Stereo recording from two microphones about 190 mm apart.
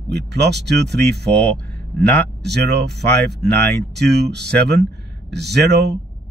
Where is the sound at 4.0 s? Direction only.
60° right (ahead or behind).